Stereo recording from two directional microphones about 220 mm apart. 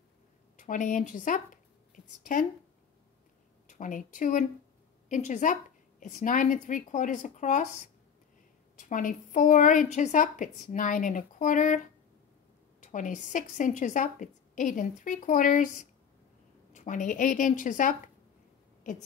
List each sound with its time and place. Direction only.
0.6 s a woman's voice: 35° left (ahead or behind)
3.6 s a woman's voice: 35° left (ahead or behind)